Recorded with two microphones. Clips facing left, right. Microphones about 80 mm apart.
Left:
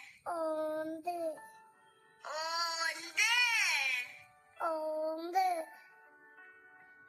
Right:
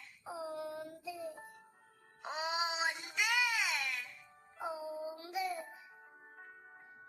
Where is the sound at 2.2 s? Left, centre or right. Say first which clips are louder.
Even; centre.